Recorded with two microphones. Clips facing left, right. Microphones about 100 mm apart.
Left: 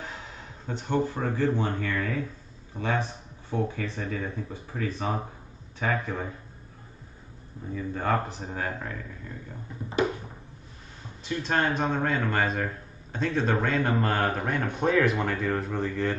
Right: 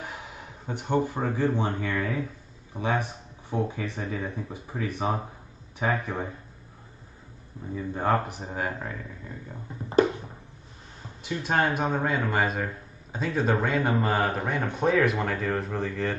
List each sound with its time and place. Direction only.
0.0 s speech: 15° right (ahead or behind)
7.7 s speech: 20° right (ahead or behind)
11.2 s a man's voice: 10° right (ahead or behind)